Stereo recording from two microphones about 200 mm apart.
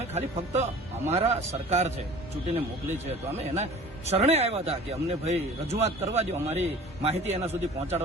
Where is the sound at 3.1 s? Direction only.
35° right (ahead or behind).